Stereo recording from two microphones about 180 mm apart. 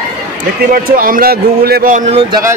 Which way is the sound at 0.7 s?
50° right (ahead or behind).